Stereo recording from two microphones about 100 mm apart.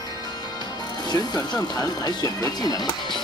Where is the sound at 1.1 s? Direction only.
40° left (ahead or behind).